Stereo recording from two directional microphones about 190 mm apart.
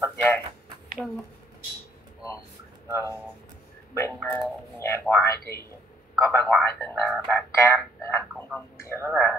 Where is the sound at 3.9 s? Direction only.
15° left (ahead or behind).